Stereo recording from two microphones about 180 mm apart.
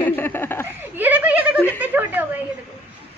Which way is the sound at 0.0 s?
10° left (ahead or behind).